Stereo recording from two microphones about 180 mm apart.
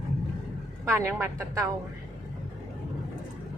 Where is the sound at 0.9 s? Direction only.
15° right (ahead or behind).